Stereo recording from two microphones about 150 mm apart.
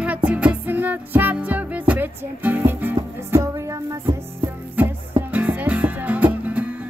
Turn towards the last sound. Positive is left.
turn(degrees=-10)  # may be behind; listen again after turning